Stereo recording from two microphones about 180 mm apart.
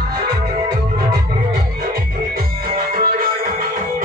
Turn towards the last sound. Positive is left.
turn(degrees=-50)  # may be behind; listen again after turning